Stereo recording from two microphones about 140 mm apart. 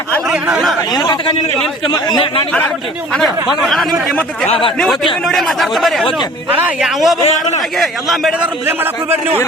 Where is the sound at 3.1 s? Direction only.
Centre (ahead or behind).